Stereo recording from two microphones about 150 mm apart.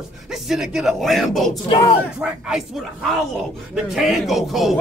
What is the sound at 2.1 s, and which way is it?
Speech, 5° right (ahead or behind).